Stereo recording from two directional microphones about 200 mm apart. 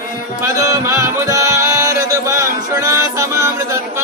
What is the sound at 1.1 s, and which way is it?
Male singing, 15° right (ahead or behind).